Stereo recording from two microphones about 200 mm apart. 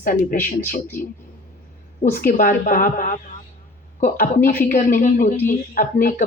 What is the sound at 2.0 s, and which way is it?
Speech, 40° left (ahead or behind).